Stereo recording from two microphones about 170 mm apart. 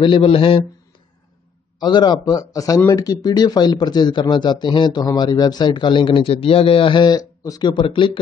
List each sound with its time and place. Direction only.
0.0 s a man's voice: 30° left (ahead or behind)
1.8 s speech: 25° left (ahead or behind)